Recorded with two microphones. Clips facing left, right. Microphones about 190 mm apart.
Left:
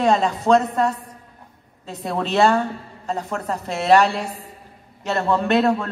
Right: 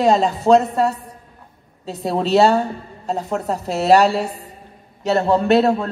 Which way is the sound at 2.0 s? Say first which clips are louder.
Right 4 dB; 35° right (ahead or behind).